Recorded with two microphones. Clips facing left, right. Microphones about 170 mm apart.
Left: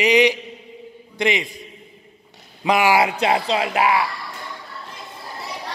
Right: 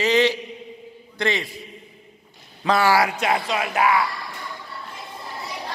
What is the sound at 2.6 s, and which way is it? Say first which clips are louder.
Speech: left 2 dB; 15° left (ahead or behind).